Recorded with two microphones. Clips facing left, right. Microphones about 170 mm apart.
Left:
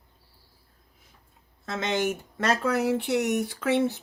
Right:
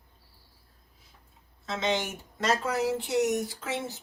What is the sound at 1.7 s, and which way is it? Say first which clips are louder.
Speech: left 2 dB; 50° left (ahead or behind).